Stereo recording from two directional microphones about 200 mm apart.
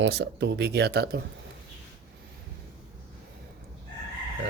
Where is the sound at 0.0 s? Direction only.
60° right (ahead or behind).